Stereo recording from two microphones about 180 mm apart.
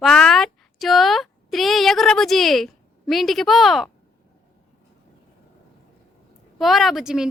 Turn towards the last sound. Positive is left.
turn(degrees=-5)  # may be behind; listen again after turning